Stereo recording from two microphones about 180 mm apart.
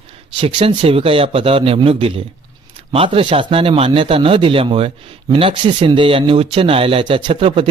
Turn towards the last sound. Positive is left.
turn(degrees=-30)  # may be behind; listen again after turning